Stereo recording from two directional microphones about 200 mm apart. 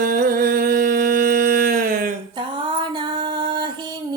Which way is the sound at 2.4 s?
25° right (ahead or behind).